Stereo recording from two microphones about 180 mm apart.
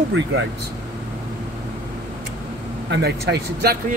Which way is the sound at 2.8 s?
65° right (ahead or behind).